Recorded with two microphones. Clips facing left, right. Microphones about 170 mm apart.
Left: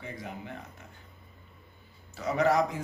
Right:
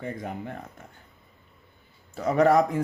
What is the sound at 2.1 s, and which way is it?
Speech, 55° right (ahead or behind).